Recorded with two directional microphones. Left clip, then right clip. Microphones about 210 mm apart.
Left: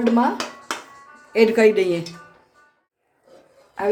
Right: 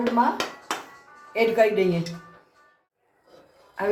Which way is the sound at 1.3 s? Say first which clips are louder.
Left 5 dB; 55° left (ahead or behind).